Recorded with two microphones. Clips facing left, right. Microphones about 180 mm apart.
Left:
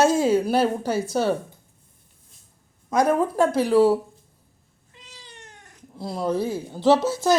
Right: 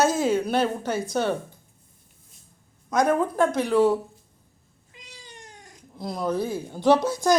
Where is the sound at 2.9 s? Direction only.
5° left (ahead or behind).